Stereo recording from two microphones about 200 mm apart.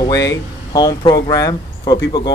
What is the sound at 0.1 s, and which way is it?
Speech, 15° left (ahead or behind).